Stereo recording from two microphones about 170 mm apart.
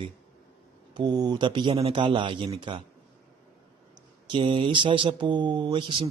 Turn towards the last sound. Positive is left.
turn(degrees=-30)  # may be behind; listen again after turning